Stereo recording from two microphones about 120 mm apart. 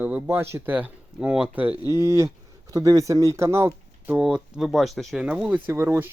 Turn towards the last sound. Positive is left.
turn(degrees=-20)  # may be behind; listen again after turning